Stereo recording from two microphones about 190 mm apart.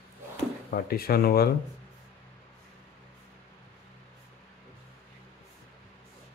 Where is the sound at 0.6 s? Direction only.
50° left (ahead or behind).